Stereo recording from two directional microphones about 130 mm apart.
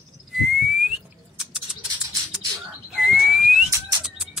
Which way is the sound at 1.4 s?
5° right (ahead or behind).